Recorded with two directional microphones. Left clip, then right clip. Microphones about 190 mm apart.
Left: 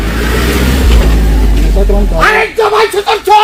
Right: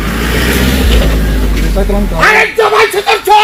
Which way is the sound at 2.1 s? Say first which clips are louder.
Right 1 dB; 40° right (ahead or behind).